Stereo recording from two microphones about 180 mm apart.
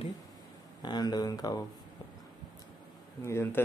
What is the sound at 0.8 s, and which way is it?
Speech, 25° left (ahead or behind).